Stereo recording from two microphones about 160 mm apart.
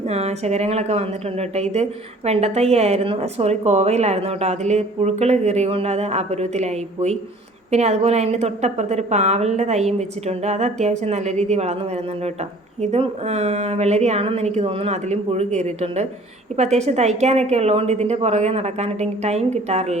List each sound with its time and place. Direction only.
0.0 s a woman's voice: 40° right (ahead or behind)